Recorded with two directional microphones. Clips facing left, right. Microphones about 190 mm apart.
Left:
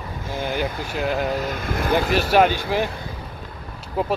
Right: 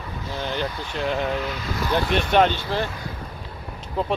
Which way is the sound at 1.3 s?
45° left (ahead or behind).